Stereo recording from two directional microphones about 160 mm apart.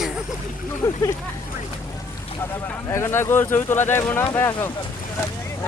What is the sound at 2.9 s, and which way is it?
Speech, 15° left (ahead or behind).